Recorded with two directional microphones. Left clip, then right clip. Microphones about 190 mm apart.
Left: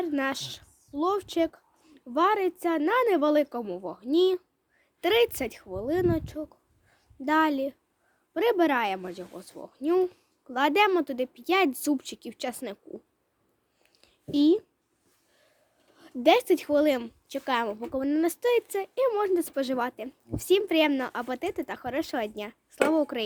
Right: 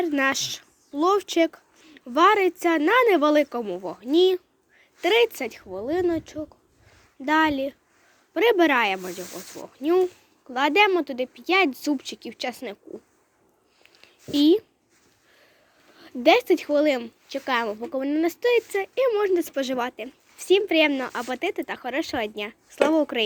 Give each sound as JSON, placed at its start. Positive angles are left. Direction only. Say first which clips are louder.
{"t": 0.0, "sound": "speech", "louder": "right 6 dB", "side_deg": 0}
{"t": 4.9, "sound": "a woman's voice", "louder": "right 3 dB", "side_deg": 20}
{"t": 13.9, "sound": "a sound", "louder": "right 3 dB", "side_deg": 15}
{"t": 16.0, "sound": "a woman's voice", "louder": "right 3 dB", "side_deg": 15}